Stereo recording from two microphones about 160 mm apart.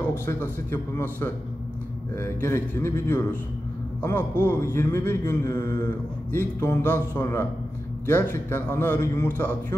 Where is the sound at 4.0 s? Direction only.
15° left (ahead or behind).